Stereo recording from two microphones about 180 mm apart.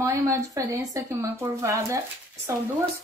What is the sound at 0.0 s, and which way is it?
Speech, 15° right (ahead or behind).